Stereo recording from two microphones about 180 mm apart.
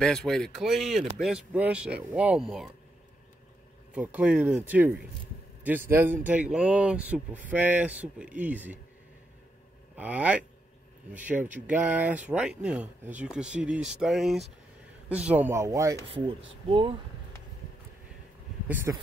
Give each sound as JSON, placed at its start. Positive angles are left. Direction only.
{"t": 0.0, "sound": "speech", "side_deg": 5}
{"t": 3.9, "sound": "speech", "side_deg": -10}
{"t": 9.9, "sound": "speech", "side_deg": -10}
{"t": 16.6, "sound": "speech", "side_deg": -25}
{"t": 18.9, "sound": "speech", "side_deg": -15}